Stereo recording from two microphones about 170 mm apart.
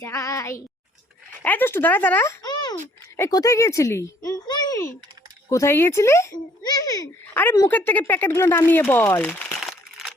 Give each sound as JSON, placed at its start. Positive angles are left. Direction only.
{"t": 0.0, "sound": "a child's voice", "side_deg": 20}
{"t": 9.6, "sound": "crumpling", "side_deg": 0}